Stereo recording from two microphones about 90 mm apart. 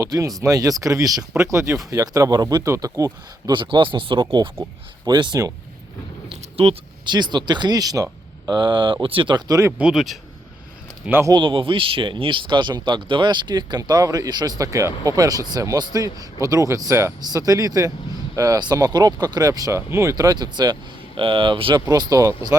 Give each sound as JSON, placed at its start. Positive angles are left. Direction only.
{"t": 0.0, "sound": "speech", "side_deg": -40}
{"t": 2.6, "sound": "speech", "side_deg": -35}
{"t": 3.5, "sound": "speech", "side_deg": -65}
{"t": 5.0, "sound": "speech", "side_deg": -50}
{"t": 6.6, "sound": "speech", "side_deg": -75}
{"t": 9.5, "sound": "speech", "side_deg": -35}
{"t": 9.7, "sound": "speech", "side_deg": -5}
{"t": 11.0, "sound": "speech", "side_deg": -25}
{"t": 11.3, "sound": "speech", "side_deg": -65}
{"t": 17.2, "sound": "speech", "side_deg": -45}
{"t": 21.2, "sound": "speech", "side_deg": -70}
{"t": 21.8, "sound": "speech", "side_deg": -40}